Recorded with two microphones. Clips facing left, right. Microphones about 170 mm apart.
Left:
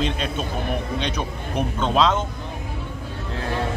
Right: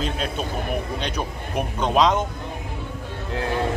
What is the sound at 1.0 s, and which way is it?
A man's voice, 10° right (ahead or behind).